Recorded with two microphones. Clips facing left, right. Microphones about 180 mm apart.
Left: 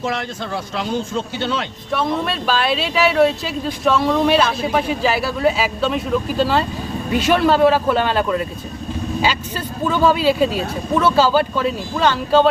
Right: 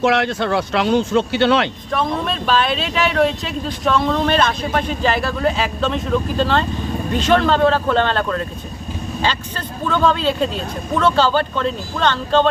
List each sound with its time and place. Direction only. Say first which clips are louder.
0.0 s speech: right 7 dB; 70° right (ahead or behind)
1.9 s speech: left 4 dB; 5° left (ahead or behind)